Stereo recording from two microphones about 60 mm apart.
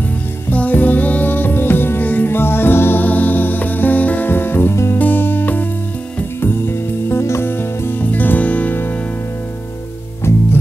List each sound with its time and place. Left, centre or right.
0.5 s music: left